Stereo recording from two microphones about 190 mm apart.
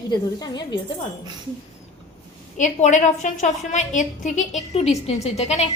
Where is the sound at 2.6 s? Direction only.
40° left (ahead or behind).